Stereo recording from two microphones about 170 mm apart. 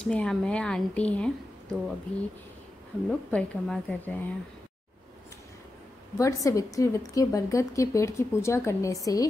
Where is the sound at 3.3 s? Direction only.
5° left (ahead or behind).